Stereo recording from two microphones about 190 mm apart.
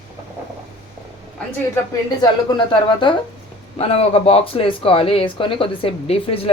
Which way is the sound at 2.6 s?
25° left (ahead or behind).